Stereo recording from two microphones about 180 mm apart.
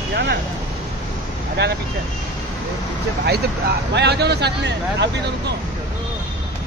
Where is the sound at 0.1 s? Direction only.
75° right (ahead or behind).